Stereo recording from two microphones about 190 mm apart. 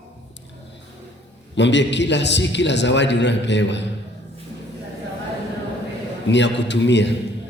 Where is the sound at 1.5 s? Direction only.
70° left (ahead or behind).